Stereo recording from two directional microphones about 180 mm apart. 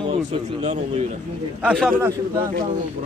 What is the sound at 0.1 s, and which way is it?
Speech, 30° right (ahead or behind).